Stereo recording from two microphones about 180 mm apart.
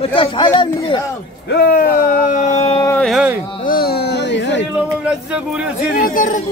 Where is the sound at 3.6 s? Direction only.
55° left (ahead or behind); by 4.7 s 80° left.